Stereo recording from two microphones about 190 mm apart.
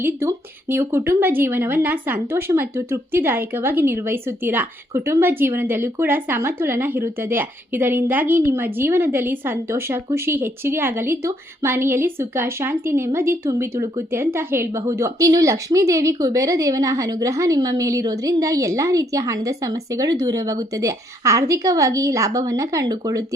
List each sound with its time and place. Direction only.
0.0 s a woman's voice: 15° right (ahead or behind)